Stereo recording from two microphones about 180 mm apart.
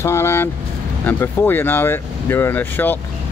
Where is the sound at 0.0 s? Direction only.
15° left (ahead or behind).